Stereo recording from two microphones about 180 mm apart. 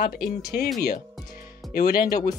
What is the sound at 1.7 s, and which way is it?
Speech, 55° left (ahead or behind).